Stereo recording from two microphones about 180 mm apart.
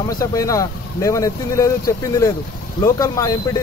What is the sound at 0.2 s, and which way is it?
Speech, 20° left (ahead or behind).